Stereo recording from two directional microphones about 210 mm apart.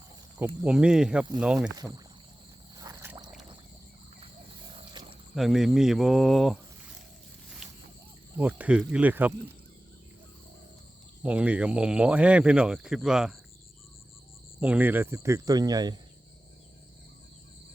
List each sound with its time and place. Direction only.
0.3 s speech: 10° right (ahead or behind)
1.7 s speech: 15° right (ahead or behind)
2.7 s a sound: 15° right (ahead or behind)
5.3 s speech: centre (ahead or behind)
8.4 s speech: 5° right (ahead or behind)
11.2 s speech: 5° right (ahead or behind)
14.6 s speech: 5° right (ahead or behind)